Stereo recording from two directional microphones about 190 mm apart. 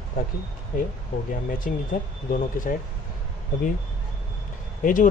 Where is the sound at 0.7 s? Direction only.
45° left (ahead or behind).